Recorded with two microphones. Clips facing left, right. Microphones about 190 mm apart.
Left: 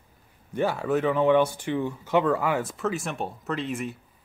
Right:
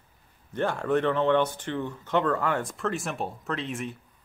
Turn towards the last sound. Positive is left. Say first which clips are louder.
# left 2 dB
turn(degrees=0)  # may be behind; listen again after turning